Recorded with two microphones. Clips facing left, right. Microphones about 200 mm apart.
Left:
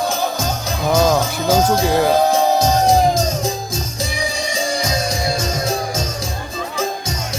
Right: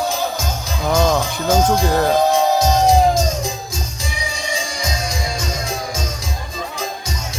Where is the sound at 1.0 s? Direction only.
5° left (ahead or behind).